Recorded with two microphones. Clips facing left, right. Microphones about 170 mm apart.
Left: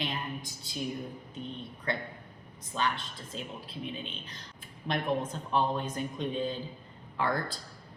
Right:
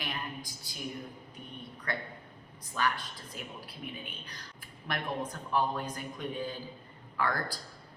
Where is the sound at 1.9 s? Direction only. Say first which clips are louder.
Left 3 dB; 25° left (ahead or behind).